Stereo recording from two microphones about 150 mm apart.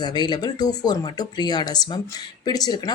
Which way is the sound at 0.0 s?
30° left (ahead or behind).